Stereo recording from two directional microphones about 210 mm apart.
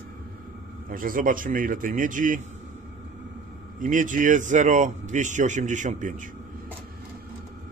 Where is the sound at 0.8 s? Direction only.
40° right (ahead or behind).